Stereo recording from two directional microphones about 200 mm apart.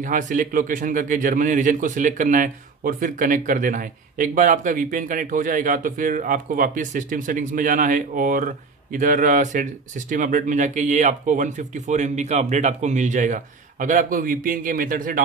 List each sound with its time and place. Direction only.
0.0 s a man's voice: 40° right (ahead or behind)